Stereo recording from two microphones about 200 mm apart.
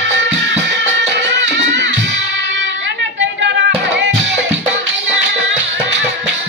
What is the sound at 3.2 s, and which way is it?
Music, 65° right (ahead or behind).